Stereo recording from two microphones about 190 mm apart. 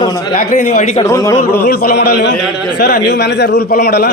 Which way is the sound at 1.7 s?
55° left (ahead or behind).